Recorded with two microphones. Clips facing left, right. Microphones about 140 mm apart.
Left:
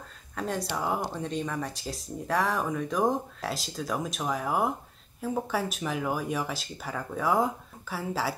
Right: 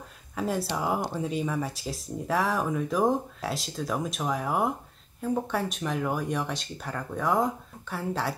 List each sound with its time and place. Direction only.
0.4 s speech: 5° right (ahead or behind)